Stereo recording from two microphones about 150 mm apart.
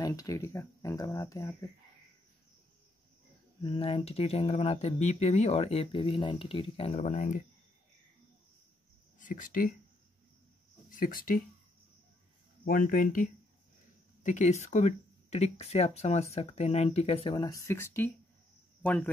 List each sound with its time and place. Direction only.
0.0 s speech: 25° left (ahead or behind)
3.6 s speech: 35° left (ahead or behind); by 7.4 s 55° left (ahead or behind)
9.2 s speech: 65° left (ahead or behind)
10.9 s speech: 65° left (ahead or behind)
12.6 s speech: 75° left (ahead or behind)
14.2 s speech: 55° left (ahead or behind); by 17.5 s 40° left (ahead or behind)
17.5 s speech: 20° left (ahead or behind)